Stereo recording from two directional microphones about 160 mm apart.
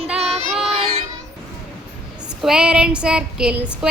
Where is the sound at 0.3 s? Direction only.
Centre (ahead or behind).